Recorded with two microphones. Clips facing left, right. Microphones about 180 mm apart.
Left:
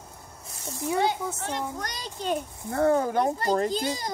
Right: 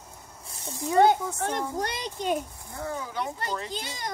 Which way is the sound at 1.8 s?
25° right (ahead or behind).